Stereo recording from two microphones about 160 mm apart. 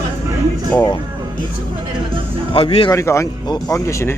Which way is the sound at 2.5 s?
35° left (ahead or behind).